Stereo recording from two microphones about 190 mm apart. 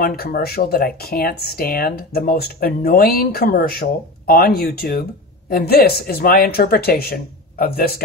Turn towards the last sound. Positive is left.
turn(degrees=55)  # may be behind; listen again after turning